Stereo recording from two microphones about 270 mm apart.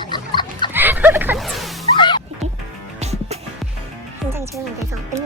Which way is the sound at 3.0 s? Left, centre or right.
Right.